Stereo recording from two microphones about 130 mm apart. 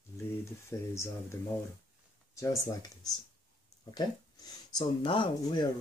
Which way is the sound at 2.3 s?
25° left (ahead or behind).